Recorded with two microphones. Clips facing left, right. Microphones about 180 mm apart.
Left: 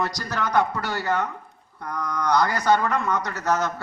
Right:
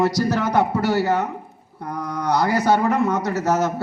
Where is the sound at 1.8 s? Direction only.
25° right (ahead or behind).